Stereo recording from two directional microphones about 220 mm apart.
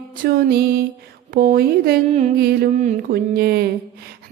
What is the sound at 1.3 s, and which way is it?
Speech, 40° right (ahead or behind).